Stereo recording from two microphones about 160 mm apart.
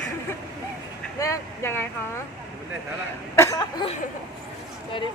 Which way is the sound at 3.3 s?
15° left (ahead or behind).